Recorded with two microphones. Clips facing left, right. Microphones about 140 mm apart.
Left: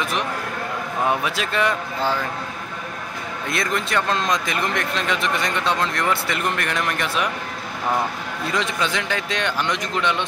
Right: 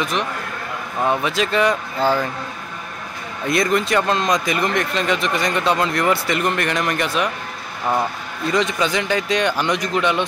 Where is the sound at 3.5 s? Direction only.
Centre (ahead or behind).